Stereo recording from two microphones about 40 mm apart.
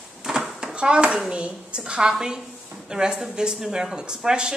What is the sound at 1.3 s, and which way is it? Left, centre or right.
Speech, right.